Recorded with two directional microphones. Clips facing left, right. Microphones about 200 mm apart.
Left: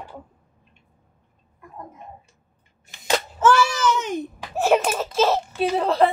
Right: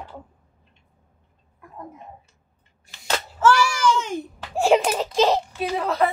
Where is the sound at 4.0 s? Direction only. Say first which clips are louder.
Left 1 dB; 20° left (ahead or behind).